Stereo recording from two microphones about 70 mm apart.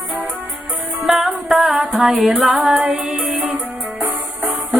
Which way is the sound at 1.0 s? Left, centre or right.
Centre.